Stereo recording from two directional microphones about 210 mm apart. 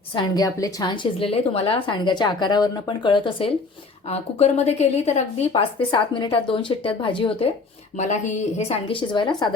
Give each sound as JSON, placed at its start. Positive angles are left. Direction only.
{"t": 0.1, "sound": "a woman's voice", "side_deg": 20}